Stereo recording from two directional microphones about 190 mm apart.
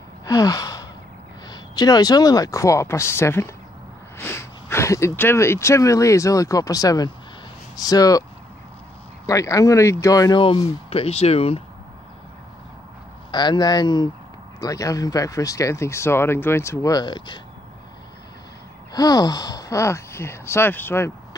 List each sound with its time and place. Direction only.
0.2 s gasp: 15° left (ahead or behind)
1.5 s speech: 20° left (ahead or behind)
13.3 s speech: 25° left (ahead or behind)
18.9 s speech: 20° left (ahead or behind)